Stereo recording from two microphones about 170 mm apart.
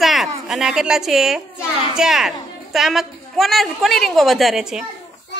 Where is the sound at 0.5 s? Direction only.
5° right (ahead or behind).